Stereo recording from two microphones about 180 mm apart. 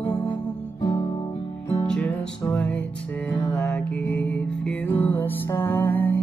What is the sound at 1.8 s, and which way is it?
Music, 5° left (ahead or behind).